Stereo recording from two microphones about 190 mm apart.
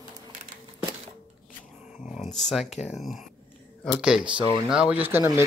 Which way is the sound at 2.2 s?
Centre (ahead or behind).